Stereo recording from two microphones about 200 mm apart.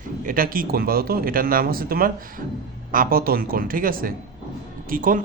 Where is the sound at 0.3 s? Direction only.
45° right (ahead or behind).